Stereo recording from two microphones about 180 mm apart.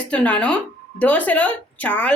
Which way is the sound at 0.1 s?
5° left (ahead or behind).